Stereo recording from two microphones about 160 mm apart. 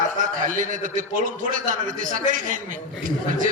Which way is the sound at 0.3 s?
55° right (ahead or behind).